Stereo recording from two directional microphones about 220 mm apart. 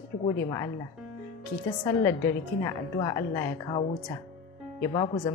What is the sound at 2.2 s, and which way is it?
A woman's voice, 15° left (ahead or behind).